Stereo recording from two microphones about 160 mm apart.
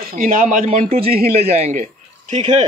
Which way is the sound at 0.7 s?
40° right (ahead or behind).